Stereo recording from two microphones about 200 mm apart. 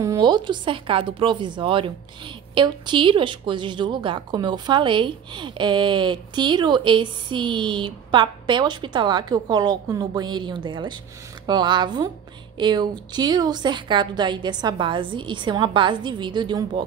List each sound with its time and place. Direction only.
0.0 s a woman's voice: 20° right (ahead or behind)